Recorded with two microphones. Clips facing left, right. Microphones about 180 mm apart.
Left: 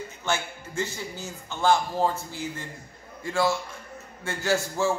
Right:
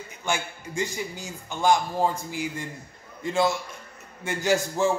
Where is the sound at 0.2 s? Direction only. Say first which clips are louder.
Right 1 dB; 15° right (ahead or behind).